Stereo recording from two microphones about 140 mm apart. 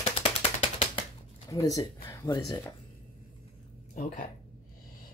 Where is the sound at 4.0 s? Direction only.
65° left (ahead or behind).